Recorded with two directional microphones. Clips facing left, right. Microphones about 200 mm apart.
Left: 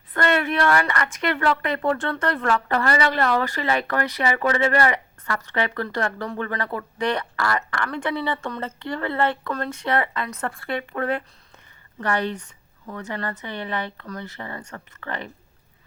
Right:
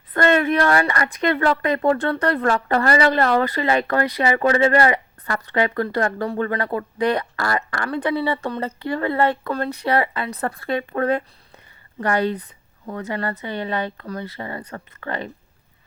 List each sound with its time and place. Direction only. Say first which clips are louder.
0.1 s speech: right 5 dB; 40° right (ahead or behind)
3.9 s speech: right 4 dB; 30° right (ahead or behind)